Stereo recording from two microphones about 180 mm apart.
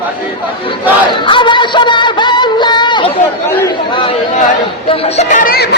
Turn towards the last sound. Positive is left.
turn(degrees=60)  # may be behind; listen again after turning